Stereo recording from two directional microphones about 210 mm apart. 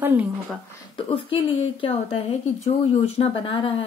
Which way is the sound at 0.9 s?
25° left (ahead or behind).